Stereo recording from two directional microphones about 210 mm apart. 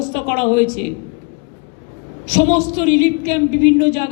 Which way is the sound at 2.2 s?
35° left (ahead or behind).